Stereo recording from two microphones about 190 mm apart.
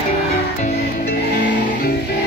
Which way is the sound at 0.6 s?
55° left (ahead or behind).